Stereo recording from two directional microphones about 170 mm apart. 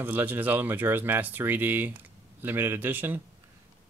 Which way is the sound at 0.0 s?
10° right (ahead or behind).